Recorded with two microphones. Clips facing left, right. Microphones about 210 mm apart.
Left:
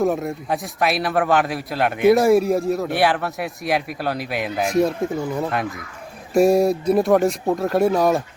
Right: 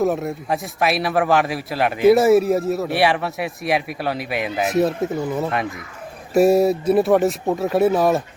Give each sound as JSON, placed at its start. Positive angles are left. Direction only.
{"t": 0.0, "sound": "a man's voice", "side_deg": 0}